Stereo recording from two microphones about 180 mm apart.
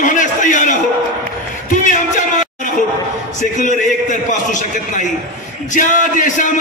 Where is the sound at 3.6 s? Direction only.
45° left (ahead or behind).